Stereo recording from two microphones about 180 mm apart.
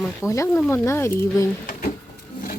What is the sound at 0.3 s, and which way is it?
Speech, 15° left (ahead or behind).